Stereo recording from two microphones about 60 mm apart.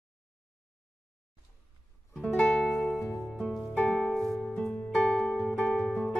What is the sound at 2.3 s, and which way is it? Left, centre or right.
Music, centre.